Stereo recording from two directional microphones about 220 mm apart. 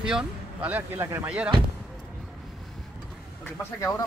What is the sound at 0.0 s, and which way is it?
Speech, 5° right (ahead or behind).